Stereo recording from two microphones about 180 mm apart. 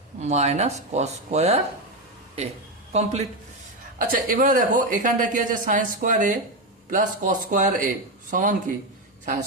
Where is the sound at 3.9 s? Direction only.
50° right (ahead or behind).